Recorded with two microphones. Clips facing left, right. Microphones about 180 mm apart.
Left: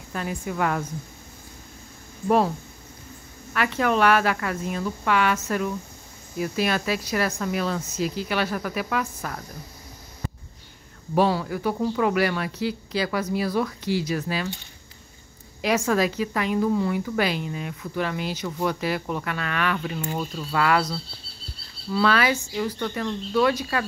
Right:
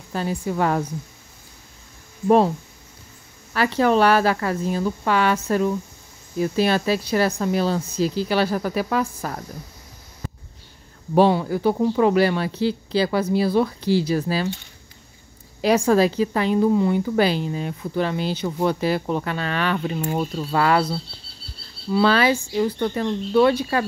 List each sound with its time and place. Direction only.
0.1 s speech: 30° right (ahead or behind)
2.2 s a woman's voice: 25° right (ahead or behind)
3.5 s speech: 30° right (ahead or behind)
11.1 s a woman's voice: 30° right (ahead or behind)
15.6 s a woman's voice: 30° right (ahead or behind)